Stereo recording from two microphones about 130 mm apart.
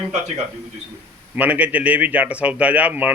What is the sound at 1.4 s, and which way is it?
A man's voice, 10° right (ahead or behind).